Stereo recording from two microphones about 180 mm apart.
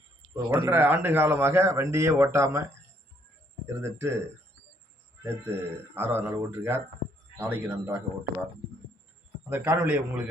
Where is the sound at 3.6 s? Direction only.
15° right (ahead or behind).